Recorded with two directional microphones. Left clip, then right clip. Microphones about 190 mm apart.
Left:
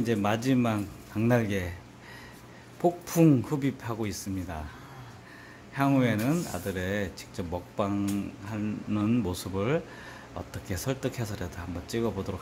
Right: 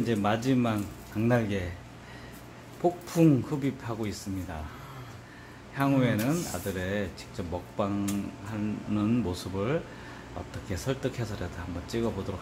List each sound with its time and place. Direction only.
0.0 s speech: 25° left (ahead or behind)
2.8 s speech: 30° left (ahead or behind)
5.8 s speech: 30° left (ahead or behind)